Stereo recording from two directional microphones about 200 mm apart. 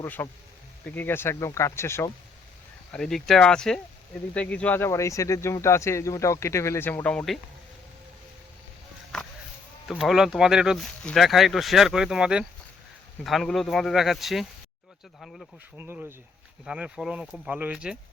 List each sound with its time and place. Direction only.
0.0 s speech: 10° left (ahead or behind)
2.9 s speech: centre (ahead or behind)
9.1 s a sound: centre (ahead or behind)
9.9 s speech: 5° right (ahead or behind)
15.8 s speech: 10° right (ahead or behind)